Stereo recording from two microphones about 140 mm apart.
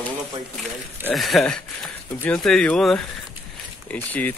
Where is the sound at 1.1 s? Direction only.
Centre (ahead or behind).